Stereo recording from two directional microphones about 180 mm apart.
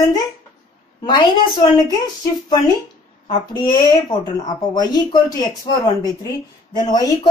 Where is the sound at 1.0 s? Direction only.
25° left (ahead or behind).